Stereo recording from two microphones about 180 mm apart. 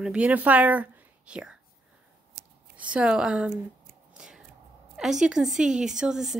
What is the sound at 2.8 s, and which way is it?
Speech, 5° right (ahead or behind).